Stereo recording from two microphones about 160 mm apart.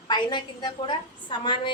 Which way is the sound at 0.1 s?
30° left (ahead or behind).